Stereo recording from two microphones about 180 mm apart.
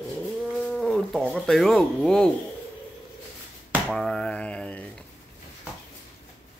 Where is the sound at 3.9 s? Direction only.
5° left (ahead or behind).